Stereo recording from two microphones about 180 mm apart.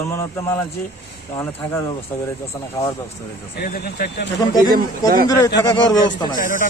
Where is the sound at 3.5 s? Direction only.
60° left (ahead or behind).